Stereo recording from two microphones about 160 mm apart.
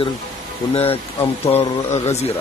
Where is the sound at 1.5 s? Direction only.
40° left (ahead or behind).